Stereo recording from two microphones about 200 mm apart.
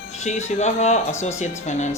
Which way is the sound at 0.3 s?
35° left (ahead or behind).